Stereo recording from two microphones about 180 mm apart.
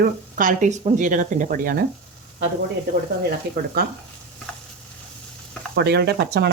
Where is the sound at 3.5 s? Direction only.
60° right (ahead or behind).